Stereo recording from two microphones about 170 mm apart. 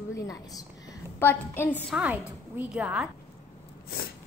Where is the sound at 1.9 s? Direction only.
10° right (ahead or behind).